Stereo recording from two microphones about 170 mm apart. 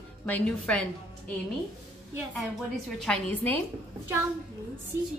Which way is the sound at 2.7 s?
5° left (ahead or behind).